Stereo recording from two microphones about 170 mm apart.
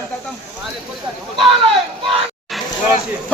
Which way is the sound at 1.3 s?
30° right (ahead or behind).